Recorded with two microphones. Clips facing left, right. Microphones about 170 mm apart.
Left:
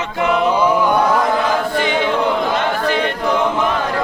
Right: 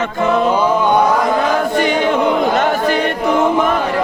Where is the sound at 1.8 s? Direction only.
45° right (ahead or behind).